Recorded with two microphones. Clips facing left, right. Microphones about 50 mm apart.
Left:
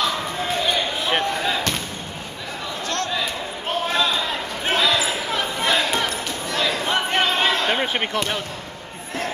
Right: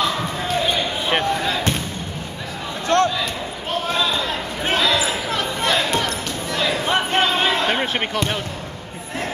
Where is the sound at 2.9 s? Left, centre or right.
Right.